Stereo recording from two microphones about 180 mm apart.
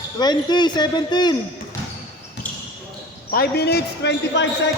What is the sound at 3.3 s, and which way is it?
Speech, 60° left (ahead or behind).